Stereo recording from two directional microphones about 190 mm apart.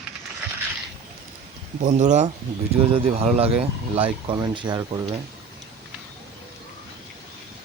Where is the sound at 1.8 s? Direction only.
40° right (ahead or behind).